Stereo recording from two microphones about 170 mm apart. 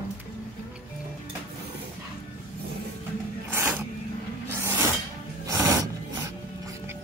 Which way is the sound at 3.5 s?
10° right (ahead or behind).